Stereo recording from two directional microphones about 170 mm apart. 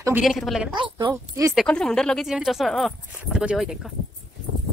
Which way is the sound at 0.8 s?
25° right (ahead or behind).